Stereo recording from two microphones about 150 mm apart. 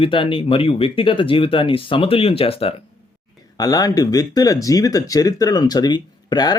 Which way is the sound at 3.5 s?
25° left (ahead or behind).